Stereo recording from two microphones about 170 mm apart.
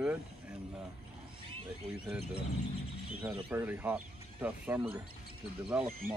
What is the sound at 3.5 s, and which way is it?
Speech, 10° right (ahead or behind).